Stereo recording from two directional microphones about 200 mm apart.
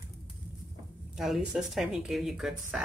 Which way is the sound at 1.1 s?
Centre (ahead or behind).